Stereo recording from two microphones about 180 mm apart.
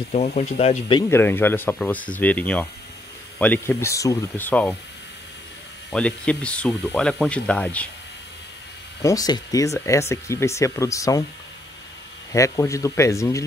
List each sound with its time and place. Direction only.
0.1 s speech: 35° left (ahead or behind)
1.1 s speech: 10° left (ahead or behind)
5.9 s speech: 5° left (ahead or behind)
9.0 s speech: 20° left (ahead or behind)
12.3 s speech: 15° left (ahead or behind)